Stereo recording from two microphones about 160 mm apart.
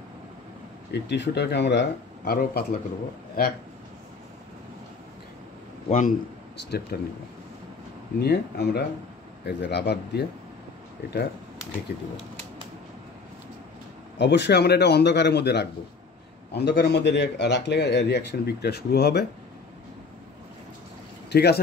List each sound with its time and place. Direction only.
0.9 s speech: 90° left; by 3.5 s 70° left (ahead or behind)
5.9 s a man's voice: 55° left (ahead or behind)
6.9 s speech: 75° left (ahead or behind)
8.2 s speech: 90° left
11.9 s speech: 90° left
14.1 s speech: 90° left
21.3 s speech: 90° left